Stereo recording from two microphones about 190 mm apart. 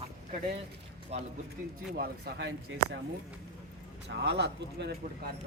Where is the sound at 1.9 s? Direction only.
55° right (ahead or behind).